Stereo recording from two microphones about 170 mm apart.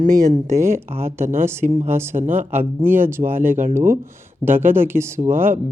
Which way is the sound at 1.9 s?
15° right (ahead or behind).